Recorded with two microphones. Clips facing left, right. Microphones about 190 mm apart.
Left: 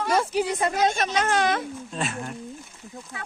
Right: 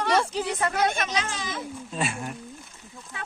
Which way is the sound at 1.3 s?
70° left (ahead or behind).